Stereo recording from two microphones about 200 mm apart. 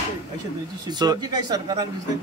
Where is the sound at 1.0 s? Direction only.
20° right (ahead or behind).